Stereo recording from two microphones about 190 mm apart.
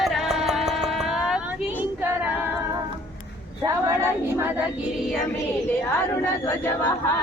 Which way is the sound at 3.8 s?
10° right (ahead or behind).